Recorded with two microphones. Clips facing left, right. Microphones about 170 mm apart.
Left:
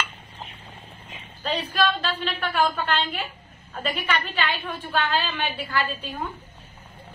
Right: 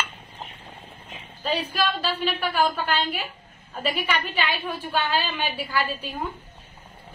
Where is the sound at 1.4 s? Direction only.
5° right (ahead or behind).